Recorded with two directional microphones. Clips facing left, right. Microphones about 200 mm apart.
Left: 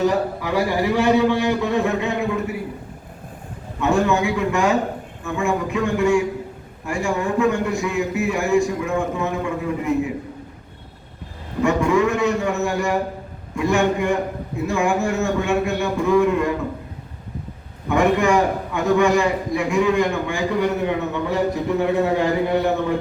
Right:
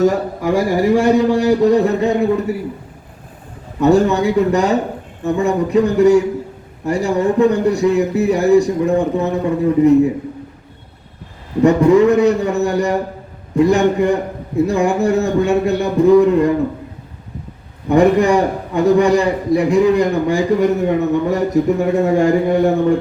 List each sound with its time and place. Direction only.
0.0 s a man's voice: 45° right (ahead or behind)
3.8 s a man's voice: 40° right (ahead or behind)
11.6 s a man's voice: 35° right (ahead or behind)
17.8 s a man's voice: 35° right (ahead or behind)